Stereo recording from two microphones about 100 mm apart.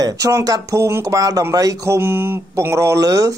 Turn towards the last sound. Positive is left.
turn(degrees=-35)  # may be behind; listen again after turning